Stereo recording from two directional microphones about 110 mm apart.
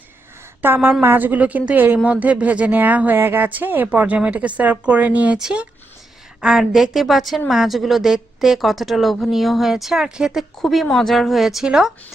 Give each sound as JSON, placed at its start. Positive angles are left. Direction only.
{"t": 0.6, "sound": "a woman's voice", "side_deg": -20}